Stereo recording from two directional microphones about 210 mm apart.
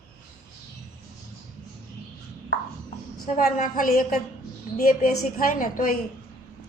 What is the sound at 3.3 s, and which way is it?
Speech, 40° left (ahead or behind).